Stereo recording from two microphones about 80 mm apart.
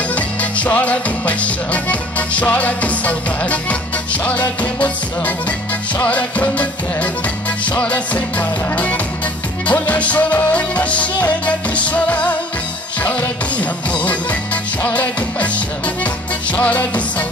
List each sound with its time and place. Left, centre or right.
0.1 s music: centre